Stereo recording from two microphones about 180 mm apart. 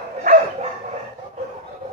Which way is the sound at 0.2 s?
45° right (ahead or behind).